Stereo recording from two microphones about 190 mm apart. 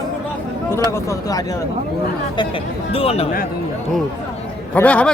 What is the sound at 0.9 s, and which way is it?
Speech, 15° left (ahead or behind).